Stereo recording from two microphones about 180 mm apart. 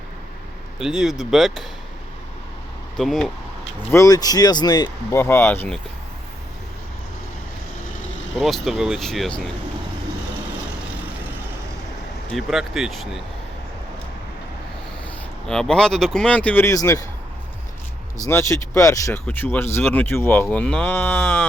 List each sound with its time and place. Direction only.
0.8 s speech: 5° right (ahead or behind)
3.0 s speech: centre (ahead or behind)
3.9 s speech: 20° left (ahead or behind)
8.4 s speech: centre (ahead or behind)
12.3 s speech: centre (ahead or behind)
15.4 s speech: 5° left (ahead or behind)
18.3 s speech: 15° left (ahead or behind)